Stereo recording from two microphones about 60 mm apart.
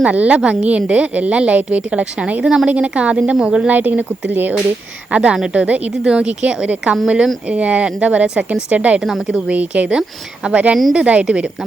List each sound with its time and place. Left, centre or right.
0.0 s a woman's voice: right
3.7 s a woman's voice: right
5.1 s a woman's voice: centre
9.0 s a woman's voice: centre
9.3 s a woman's voice: right